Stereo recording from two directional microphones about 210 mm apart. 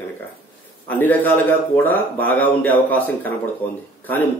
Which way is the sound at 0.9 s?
10° left (ahead or behind).